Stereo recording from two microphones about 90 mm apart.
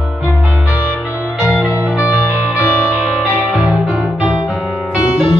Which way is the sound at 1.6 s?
15° right (ahead or behind).